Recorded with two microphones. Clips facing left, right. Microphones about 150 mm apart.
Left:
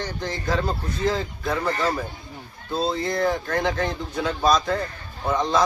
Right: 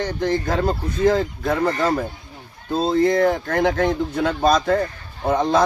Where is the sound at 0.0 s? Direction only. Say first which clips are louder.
Right 7 dB; 55° right (ahead or behind).